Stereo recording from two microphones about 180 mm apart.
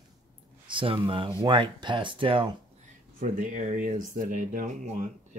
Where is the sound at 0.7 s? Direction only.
30° right (ahead or behind).